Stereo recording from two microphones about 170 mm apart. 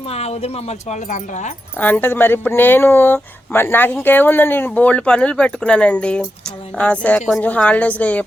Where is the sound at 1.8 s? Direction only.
10° left (ahead or behind).